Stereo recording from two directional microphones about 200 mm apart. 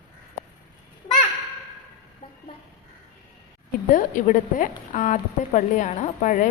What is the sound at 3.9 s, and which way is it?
A woman's voice, 40° left (ahead or behind).